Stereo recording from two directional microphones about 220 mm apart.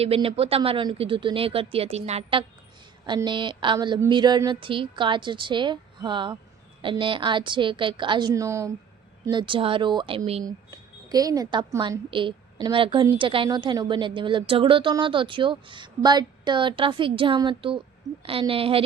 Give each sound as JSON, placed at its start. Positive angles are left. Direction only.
{"t": 0.0, "sound": "speech", "side_deg": -25}